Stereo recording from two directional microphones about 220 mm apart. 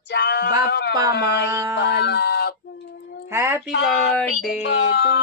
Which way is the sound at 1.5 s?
15° right (ahead or behind).